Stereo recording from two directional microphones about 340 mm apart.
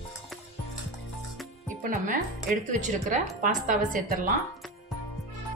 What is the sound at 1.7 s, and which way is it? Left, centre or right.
Speech, right.